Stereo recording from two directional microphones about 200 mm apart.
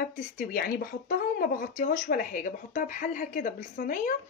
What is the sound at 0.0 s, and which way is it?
Speech, 45° left (ahead or behind).